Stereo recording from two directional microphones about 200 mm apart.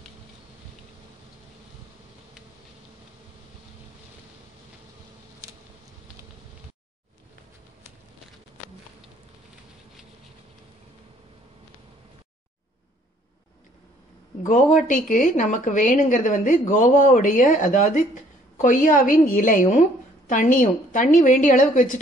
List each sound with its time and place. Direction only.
14.4 s a woman's voice: 40° left (ahead or behind)